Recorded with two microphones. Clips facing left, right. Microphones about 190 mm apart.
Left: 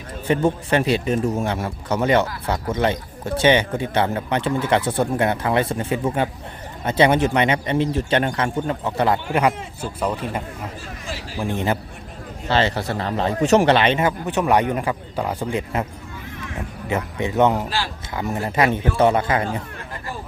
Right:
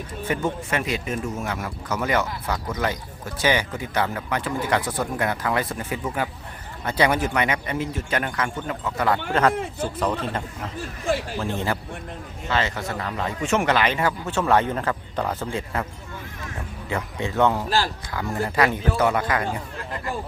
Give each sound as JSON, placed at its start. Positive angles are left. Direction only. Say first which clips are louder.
{"t": 0.3, "sound": "speech", "louder": "left 7 dB", "side_deg": 30}
{"t": 9.3, "sound": "speech", "louder": "left 1 dB", "side_deg": 10}
{"t": 12.5, "sound": "speech", "louder": "left 5 dB", "side_deg": 30}
{"t": 16.9, "sound": "speech", "louder": "left 4 dB", "side_deg": 20}
{"t": 17.7, "sound": "a man's voice", "louder": "right 3 dB", "side_deg": -45}
{"t": 18.1, "sound": "speech", "louder": "left 5 dB", "side_deg": 20}